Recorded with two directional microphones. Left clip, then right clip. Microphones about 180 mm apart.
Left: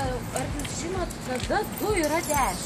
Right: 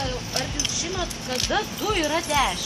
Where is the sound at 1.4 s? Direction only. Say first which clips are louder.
Right 1 dB; 10° left (ahead or behind).